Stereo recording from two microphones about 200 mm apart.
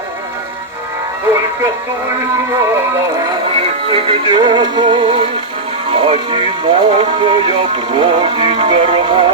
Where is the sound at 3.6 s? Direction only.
30° right (ahead or behind).